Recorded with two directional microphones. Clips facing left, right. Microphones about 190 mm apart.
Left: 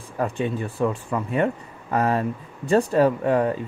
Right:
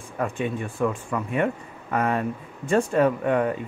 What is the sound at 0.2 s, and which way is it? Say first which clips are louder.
Speech: left 2 dB; 35° left (ahead or behind).